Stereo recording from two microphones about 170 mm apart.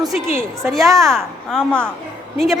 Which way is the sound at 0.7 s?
Centre (ahead or behind).